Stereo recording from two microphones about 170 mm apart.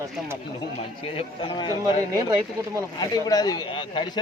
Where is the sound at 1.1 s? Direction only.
30° left (ahead or behind).